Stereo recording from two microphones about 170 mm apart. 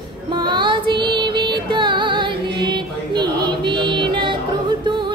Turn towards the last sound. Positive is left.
turn(degrees=-30)  # may be behind; listen again after turning